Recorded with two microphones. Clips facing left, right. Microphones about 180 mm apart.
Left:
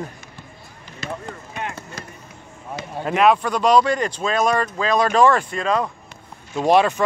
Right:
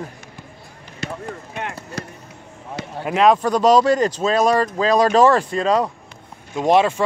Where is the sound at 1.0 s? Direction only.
60° right (ahead or behind).